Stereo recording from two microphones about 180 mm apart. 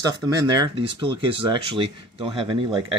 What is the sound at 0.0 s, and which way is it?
Speech, 20° right (ahead or behind).